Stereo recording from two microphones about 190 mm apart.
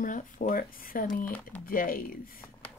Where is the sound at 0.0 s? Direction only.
45° left (ahead or behind).